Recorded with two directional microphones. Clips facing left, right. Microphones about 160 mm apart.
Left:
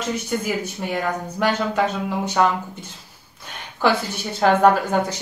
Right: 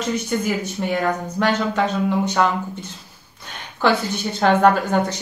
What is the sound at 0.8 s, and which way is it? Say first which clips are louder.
A woman's voice: right 3 dB; 5° left (ahead or behind).